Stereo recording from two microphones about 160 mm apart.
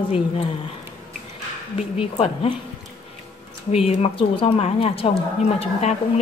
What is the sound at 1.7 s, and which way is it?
Speech, 35° left (ahead or behind).